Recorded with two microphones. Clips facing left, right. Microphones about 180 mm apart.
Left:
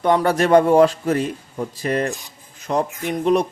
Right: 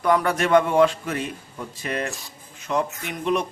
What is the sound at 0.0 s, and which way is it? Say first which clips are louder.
Speech: left 4 dB; 30° left (ahead or behind).